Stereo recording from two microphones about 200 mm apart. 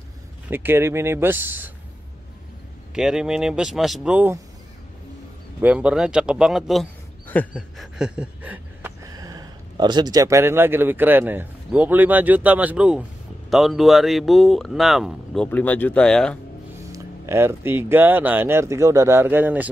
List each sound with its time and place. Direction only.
0.5 s speech: 10° right (ahead or behind)
2.9 s speech: 5° right (ahead or behind)
5.6 s a man's voice: 5° right (ahead or behind)
7.5 s a sound: centre (ahead or behind)
13.5 s speech: centre (ahead or behind)
16.9 s speech: 15° right (ahead or behind)